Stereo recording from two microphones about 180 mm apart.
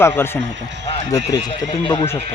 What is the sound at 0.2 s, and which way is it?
Speech, 15° left (ahead or behind).